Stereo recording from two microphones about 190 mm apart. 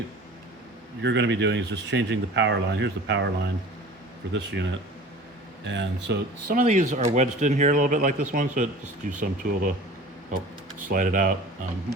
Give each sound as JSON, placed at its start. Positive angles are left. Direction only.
{"t": 1.0, "sound": "speech", "side_deg": -70}
{"t": 4.3, "sound": "speech", "side_deg": -65}
{"t": 6.5, "sound": "speech", "side_deg": -45}
{"t": 10.8, "sound": "speech", "side_deg": -45}